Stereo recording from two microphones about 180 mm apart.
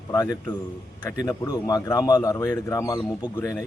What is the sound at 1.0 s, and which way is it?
Speech, 15° left (ahead or behind).